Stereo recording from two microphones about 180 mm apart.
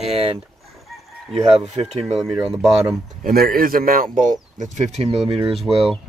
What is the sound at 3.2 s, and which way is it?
Speech, 55° right (ahead or behind).